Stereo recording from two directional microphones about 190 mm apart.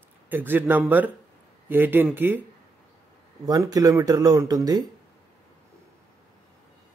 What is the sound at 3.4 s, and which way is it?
Speech, 20° right (ahead or behind).